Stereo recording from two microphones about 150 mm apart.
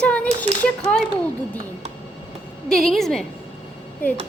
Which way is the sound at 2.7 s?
5° left (ahead or behind).